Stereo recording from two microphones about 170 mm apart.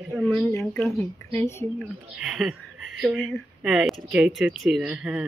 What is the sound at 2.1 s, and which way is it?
Speech, centre (ahead or behind).